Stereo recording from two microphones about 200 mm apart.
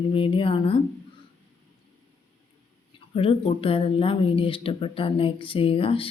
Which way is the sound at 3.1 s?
30° left (ahead or behind).